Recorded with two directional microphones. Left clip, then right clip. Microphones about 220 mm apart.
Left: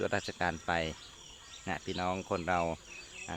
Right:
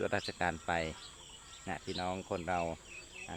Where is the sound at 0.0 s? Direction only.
15° left (ahead or behind).